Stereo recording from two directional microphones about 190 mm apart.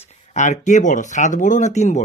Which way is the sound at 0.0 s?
40° left (ahead or behind).